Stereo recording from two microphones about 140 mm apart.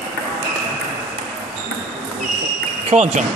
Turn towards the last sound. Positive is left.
turn(degrees=-55)  # may be behind; listen again after turning